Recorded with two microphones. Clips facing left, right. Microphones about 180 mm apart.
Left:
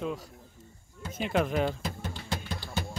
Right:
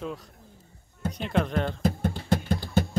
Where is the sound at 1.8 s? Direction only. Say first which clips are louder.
Right 10 dB; 50° right (ahead or behind).